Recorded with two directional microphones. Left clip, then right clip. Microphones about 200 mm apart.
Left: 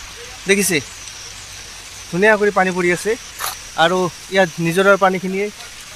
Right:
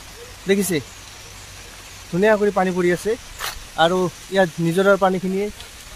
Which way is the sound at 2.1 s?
20° left (ahead or behind).